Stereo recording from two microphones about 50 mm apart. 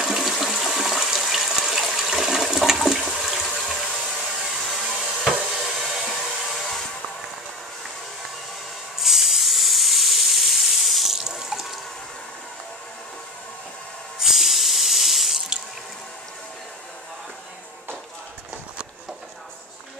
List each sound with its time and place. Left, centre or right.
0.0 s water: centre
3.5 s water: centre
4.4 s hair dryer: centre
4.9 s a sound: centre
5.7 s hair dryer: centre
6.6 s vehicle: centre
9.0 s hiss: centre
14.2 s sink: centre